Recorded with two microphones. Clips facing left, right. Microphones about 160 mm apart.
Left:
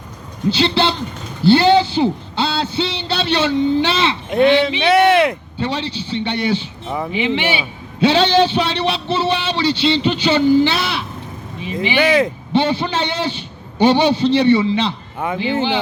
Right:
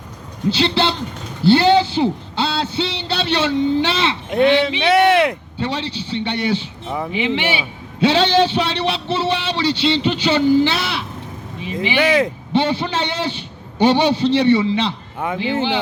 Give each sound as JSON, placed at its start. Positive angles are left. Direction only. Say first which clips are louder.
{"t": 0.5, "sound": "a man's voice", "louder": "left 1 dB", "side_deg": 30}
{"t": 6.9, "sound": "speech", "louder": "left 1 dB", "side_deg": 45}
{"t": 7.2, "sound": "a man's voice", "louder": "left 1 dB", "side_deg": 30}